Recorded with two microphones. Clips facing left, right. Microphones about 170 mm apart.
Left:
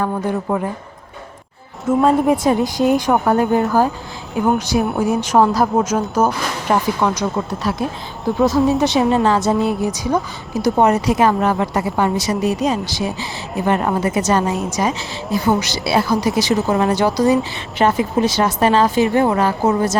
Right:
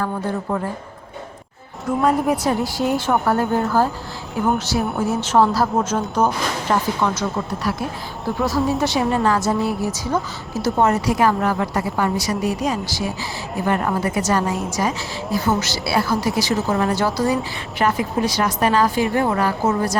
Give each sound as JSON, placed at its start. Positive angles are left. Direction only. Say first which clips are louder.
{"t": 0.0, "sound": "speech", "louder": "left 3 dB", "side_deg": 15}
{"t": 2.0, "sound": "a woman's voice", "louder": "left 4 dB", "side_deg": 25}